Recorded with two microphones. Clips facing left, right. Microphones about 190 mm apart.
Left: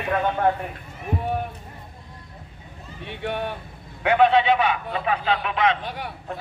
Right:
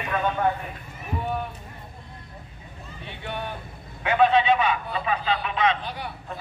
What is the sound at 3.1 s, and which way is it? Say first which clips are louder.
A man's voice: left 5 dB; 65° left (ahead or behind).